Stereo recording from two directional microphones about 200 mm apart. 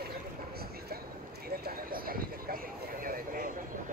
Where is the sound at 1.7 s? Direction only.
45° right (ahead or behind).